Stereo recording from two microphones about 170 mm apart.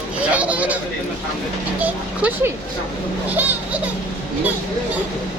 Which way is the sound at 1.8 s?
10° right (ahead or behind).